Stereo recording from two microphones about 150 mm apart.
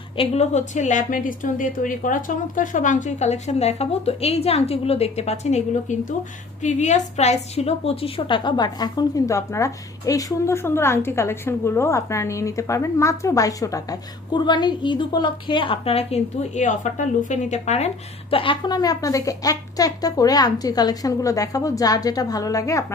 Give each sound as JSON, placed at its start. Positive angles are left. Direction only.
{"t": 0.2, "sound": "a woman's voice", "side_deg": 45}